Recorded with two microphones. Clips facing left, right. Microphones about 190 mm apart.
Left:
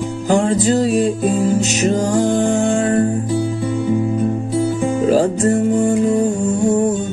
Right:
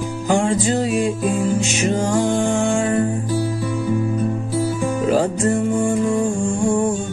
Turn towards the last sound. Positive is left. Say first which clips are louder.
# left 3 dB
turn(degrees=40)  # may be behind; listen again after turning